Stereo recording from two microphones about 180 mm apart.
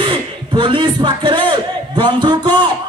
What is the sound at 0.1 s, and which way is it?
A man's voice, 25° right (ahead or behind).